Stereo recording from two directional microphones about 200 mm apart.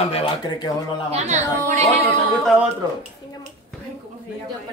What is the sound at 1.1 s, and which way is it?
Speech, 35° right (ahead or behind).